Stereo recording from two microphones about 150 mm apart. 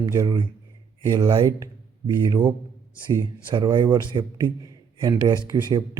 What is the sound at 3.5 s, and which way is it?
A man's voice, 30° right (ahead or behind).